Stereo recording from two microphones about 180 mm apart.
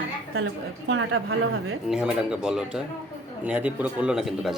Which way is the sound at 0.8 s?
90° right.